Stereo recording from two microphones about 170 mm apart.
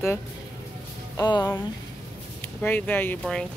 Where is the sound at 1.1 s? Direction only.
20° left (ahead or behind).